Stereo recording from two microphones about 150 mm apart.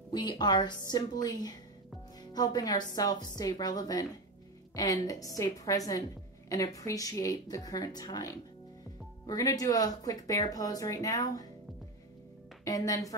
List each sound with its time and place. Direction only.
0.1 s speech: 30° left (ahead or behind)
12.6 s speech: 25° left (ahead or behind)